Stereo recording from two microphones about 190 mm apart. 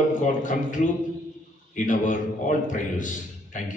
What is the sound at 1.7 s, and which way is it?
A man's voice, 40° left (ahead or behind).